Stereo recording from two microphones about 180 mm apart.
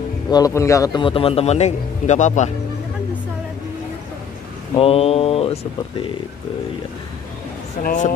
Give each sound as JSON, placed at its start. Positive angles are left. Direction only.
{"t": 0.3, "sound": "a man's voice", "side_deg": 20}
{"t": 4.7, "sound": "a man's voice", "side_deg": 35}
{"t": 7.8, "sound": "speech", "side_deg": 45}